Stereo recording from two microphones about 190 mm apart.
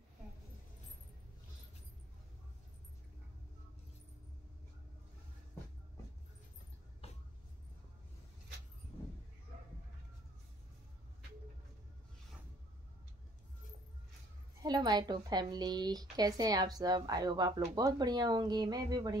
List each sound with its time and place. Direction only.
14.6 s speech: 20° right (ahead or behind)